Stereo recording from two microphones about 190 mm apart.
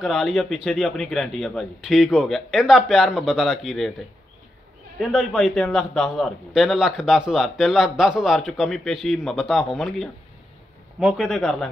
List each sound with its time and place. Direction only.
0.0 s a man's voice: centre (ahead or behind)
5.1 s a man's voice: 5° left (ahead or behind)